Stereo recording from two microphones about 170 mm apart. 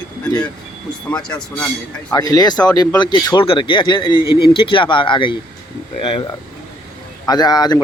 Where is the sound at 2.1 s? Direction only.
20° left (ahead or behind).